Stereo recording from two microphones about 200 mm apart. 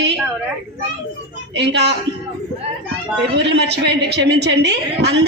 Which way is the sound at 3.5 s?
60° right (ahead or behind).